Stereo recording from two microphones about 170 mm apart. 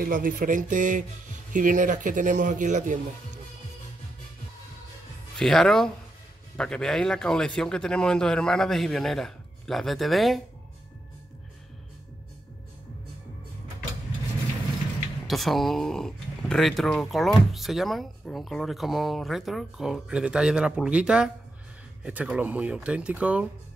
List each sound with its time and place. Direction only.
0.0 s speech: 55° right (ahead or behind)
5.4 s speech: centre (ahead or behind)
15.2 s speech: centre (ahead or behind)